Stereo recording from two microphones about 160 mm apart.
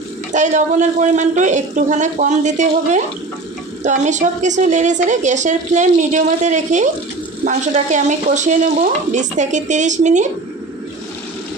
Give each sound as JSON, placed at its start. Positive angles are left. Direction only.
{"t": 0.3, "sound": "a woman's voice", "side_deg": -50}